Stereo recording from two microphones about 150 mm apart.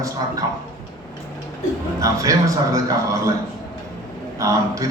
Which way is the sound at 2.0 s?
20° right (ahead or behind).